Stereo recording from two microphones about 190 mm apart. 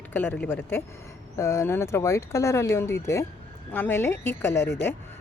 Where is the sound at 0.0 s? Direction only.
10° left (ahead or behind).